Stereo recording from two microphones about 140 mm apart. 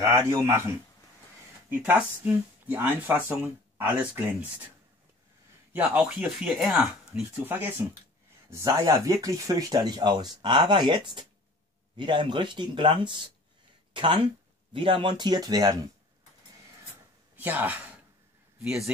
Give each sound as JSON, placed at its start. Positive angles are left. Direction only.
{"t": 0.0, "sound": "speech", "side_deg": -20}
{"t": 5.7, "sound": "speech", "side_deg": -10}
{"t": 7.4, "sound": "speech", "side_deg": -15}
{"t": 17.4, "sound": "speech", "side_deg": -10}